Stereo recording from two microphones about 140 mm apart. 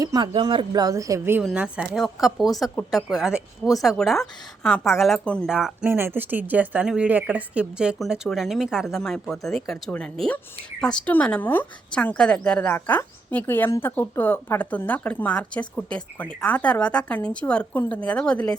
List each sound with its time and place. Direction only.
0.0 s speech: 30° right (ahead or behind); by 5.5 s 5° left (ahead or behind)
5.5 s speech: 5° right (ahead or behind)
5.9 s speech: 15° right (ahead or behind); by 18.5 s 10° left (ahead or behind)